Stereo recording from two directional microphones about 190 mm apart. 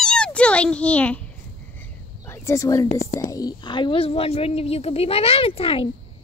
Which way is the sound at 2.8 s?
40° left (ahead or behind).